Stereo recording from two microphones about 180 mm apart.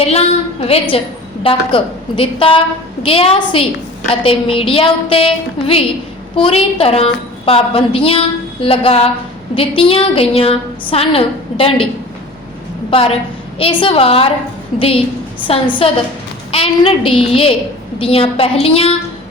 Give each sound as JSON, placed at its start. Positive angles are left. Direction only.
{"t": 0.0, "sound": "a woman's voice", "side_deg": 35}
{"t": 12.9, "sound": "a woman's voice", "side_deg": 30}
{"t": 15.4, "sound": "a woman's voice", "side_deg": 30}